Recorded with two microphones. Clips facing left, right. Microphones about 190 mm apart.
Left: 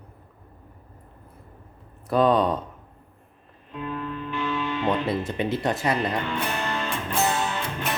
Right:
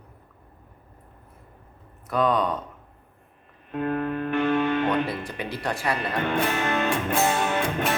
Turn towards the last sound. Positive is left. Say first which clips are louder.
# right 4 dB
turn(degrees=-55)  # may be behind; listen again after turning